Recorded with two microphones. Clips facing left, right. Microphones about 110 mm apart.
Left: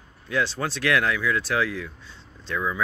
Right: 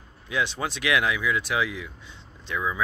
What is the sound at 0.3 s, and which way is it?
Speech, 15° right (ahead or behind).